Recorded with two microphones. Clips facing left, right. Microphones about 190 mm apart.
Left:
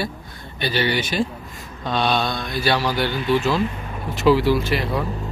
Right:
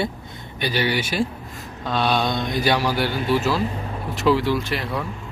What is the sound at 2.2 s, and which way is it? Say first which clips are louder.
Mantra: right 2 dB; 20° right (ahead or behind).